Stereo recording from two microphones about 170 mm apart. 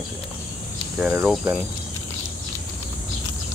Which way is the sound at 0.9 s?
5° right (ahead or behind).